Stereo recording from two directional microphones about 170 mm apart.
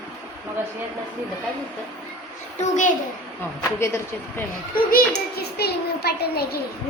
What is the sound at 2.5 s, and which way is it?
Speech, 45° left (ahead or behind).